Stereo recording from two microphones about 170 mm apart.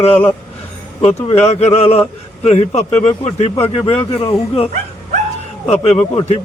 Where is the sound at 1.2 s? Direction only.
40° left (ahead or behind).